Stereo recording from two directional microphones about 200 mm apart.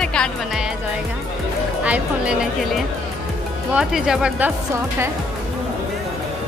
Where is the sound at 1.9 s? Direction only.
5° right (ahead or behind).